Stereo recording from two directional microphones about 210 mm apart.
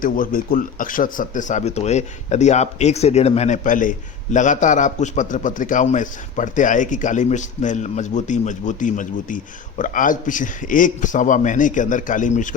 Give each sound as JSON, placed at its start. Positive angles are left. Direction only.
{"t": 0.0, "sound": "speech", "side_deg": 40}